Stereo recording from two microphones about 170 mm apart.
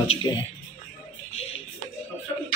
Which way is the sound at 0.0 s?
30° left (ahead or behind).